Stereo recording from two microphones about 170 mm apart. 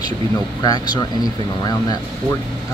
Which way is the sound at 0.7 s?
25° left (ahead or behind).